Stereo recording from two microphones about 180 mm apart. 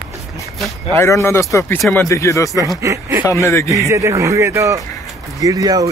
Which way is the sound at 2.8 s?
15° right (ahead or behind).